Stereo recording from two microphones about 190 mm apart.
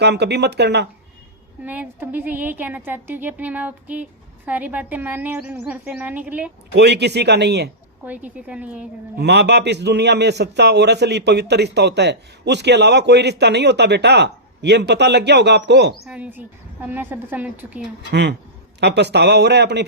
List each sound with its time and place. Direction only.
0.0 s a man's voice: 60° right (ahead or behind)
1.6 s a woman's voice: 10° right (ahead or behind)
6.7 s a man's voice: 60° right (ahead or behind)
8.0 s a woman's voice: 10° right (ahead or behind)
9.1 s a man's voice: 60° right (ahead or behind)
16.0 s a woman's voice: 5° right (ahead or behind)
18.1 s a man's voice: 65° right (ahead or behind)